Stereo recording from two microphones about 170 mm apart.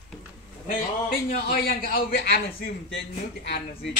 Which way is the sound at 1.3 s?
60° left (ahead or behind).